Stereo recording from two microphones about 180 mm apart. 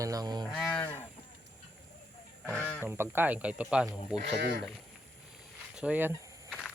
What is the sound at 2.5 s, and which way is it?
Speech, 10° left (ahead or behind).